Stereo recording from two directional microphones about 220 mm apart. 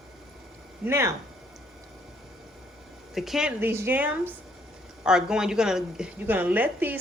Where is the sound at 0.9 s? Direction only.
10° right (ahead or behind).